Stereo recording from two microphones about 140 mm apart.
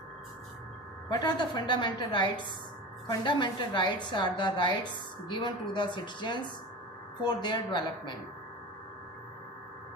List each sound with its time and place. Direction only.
1.1 s a woman's voice: 30° left (ahead or behind)